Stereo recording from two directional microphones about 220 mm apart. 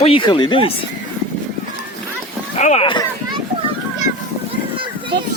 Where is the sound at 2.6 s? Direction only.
30° left (ahead or behind).